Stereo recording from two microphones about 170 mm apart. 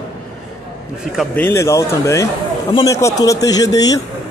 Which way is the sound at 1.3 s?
15° left (ahead or behind).